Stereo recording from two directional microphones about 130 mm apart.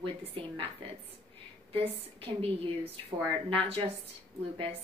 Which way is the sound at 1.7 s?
50° right (ahead or behind).